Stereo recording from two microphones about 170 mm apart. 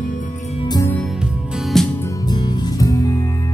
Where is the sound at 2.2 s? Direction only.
25° left (ahead or behind).